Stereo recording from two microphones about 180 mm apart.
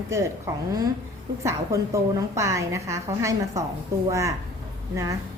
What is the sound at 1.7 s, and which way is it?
A woman's voice, 15° right (ahead or behind).